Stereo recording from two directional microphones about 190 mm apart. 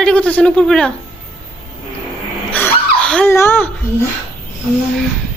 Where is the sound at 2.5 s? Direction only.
10° left (ahead or behind).